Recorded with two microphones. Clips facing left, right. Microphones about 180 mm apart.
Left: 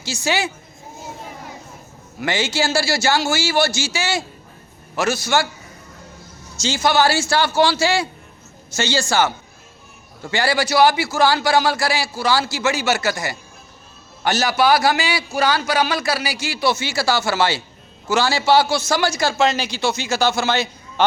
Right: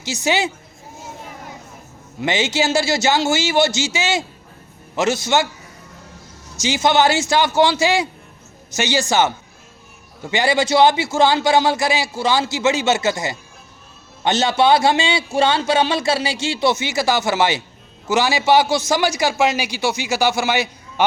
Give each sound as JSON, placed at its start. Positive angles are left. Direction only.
{"t": 0.0, "sound": "a man's voice", "side_deg": -20}
{"t": 2.2, "sound": "a man's voice", "side_deg": -20}
{"t": 6.6, "sound": "a man's voice", "side_deg": -20}